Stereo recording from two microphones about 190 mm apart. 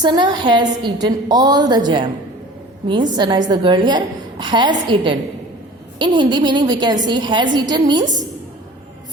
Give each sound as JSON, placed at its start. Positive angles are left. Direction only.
{"t": 0.0, "sound": "a woman's voice", "side_deg": -20}